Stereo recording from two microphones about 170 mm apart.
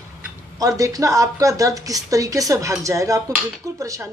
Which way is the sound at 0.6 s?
20° right (ahead or behind).